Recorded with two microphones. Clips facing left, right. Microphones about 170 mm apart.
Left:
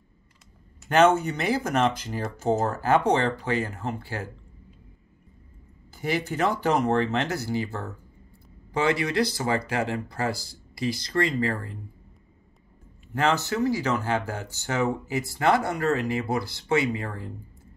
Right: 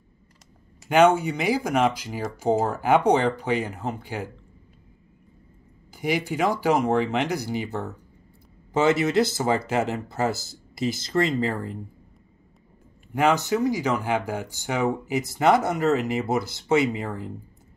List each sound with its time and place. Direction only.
0.8 s speech: 10° right (ahead or behind)
5.9 s speech: 15° right (ahead or behind)
13.1 s speech: 15° right (ahead or behind)